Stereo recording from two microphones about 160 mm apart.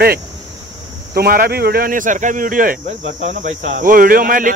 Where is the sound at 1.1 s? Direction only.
70° right (ahead or behind).